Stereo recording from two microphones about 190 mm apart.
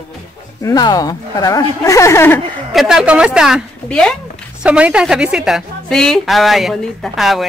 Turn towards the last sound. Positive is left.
turn(degrees=0)  # may be behind; listen again after turning